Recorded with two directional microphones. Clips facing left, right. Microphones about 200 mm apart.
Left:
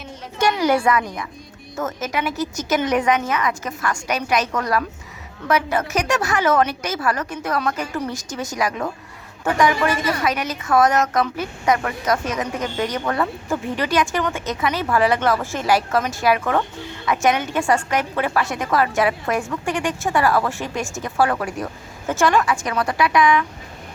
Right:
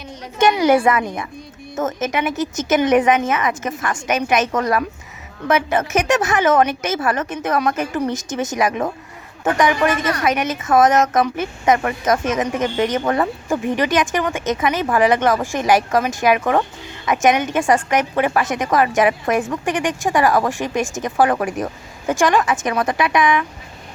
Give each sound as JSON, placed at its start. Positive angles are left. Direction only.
{"t": 0.9, "sound": "a woman's voice", "side_deg": -25}